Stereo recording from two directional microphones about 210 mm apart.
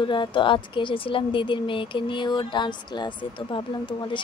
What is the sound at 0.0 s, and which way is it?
Speech, 20° left (ahead or behind).